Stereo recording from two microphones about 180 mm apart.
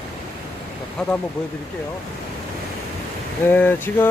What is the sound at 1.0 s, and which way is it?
Speech, centre (ahead or behind).